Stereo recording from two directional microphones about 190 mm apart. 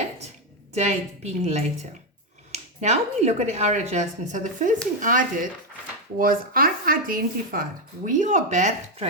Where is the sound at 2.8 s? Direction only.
40° right (ahead or behind).